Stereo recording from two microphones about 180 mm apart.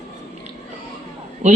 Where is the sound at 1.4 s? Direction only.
40° right (ahead or behind).